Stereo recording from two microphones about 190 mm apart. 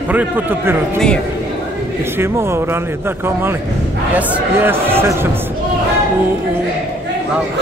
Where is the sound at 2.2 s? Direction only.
15° right (ahead or behind).